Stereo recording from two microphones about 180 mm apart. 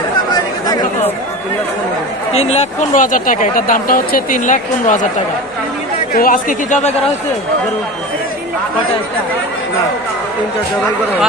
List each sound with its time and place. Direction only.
2.3 s speech: 35° left (ahead or behind)
6.1 s speech: 50° left (ahead or behind)